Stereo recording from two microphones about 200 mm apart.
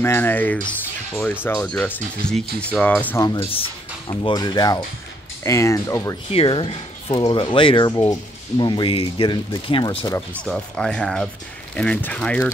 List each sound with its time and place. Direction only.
0.0 s speech: 10° left (ahead or behind)
6.3 s speech: 25° left (ahead or behind)
10.4 s speech: 5° left (ahead or behind)